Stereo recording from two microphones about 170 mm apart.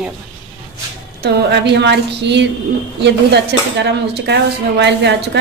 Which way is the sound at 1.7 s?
90° right.